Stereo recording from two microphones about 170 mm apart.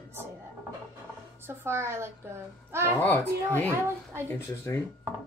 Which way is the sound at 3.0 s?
10° left (ahead or behind).